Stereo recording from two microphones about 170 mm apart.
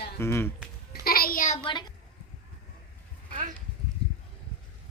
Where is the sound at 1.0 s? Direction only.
60° left (ahead or behind).